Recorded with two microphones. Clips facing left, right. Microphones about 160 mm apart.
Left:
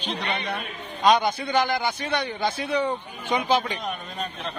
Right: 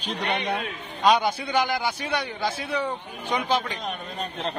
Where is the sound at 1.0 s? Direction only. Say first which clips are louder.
Left 1 dB; 5° right (ahead or behind).